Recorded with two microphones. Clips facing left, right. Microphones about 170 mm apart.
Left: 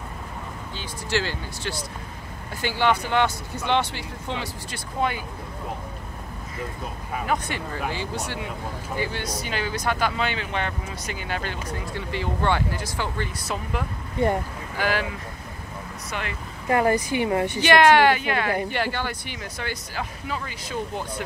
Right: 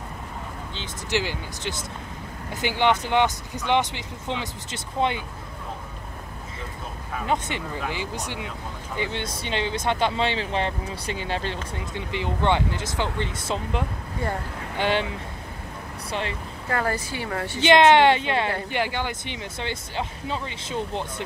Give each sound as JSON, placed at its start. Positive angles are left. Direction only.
{"t": 0.7, "sound": "speech", "side_deg": -20}
{"t": 7.2, "sound": "speech", "side_deg": -20}
{"t": 16.1, "sound": "speech", "side_deg": -30}
{"t": 16.6, "sound": "speech", "side_deg": 15}
{"t": 17.6, "sound": "speech", "side_deg": -20}